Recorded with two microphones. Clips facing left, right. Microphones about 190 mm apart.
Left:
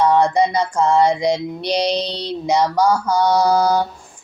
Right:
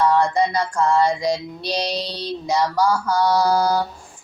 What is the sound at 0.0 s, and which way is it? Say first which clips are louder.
Music: left 3 dB; 20° left (ahead or behind).